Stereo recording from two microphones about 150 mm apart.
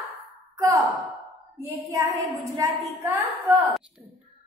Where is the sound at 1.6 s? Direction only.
20° right (ahead or behind).